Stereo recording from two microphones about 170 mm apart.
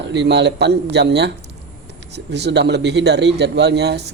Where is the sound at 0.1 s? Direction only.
90° right.